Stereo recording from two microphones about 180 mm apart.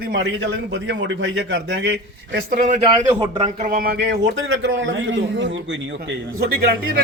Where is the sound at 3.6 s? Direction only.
50° right (ahead or behind); by 5.5 s 90° right.